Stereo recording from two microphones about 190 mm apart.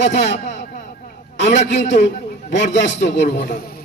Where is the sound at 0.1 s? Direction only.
65° left (ahead or behind).